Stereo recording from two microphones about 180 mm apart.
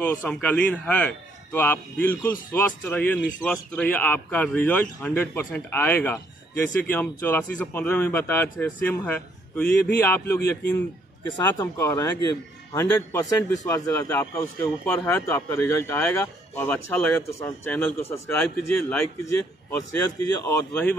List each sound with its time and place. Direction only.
0.0 s a man's voice: 10° left (ahead or behind)
10.4 s a man's voice: 65° left (ahead or behind)
11.5 s a man's voice: 15° left (ahead or behind)
20.3 s a man's voice: 15° left (ahead or behind)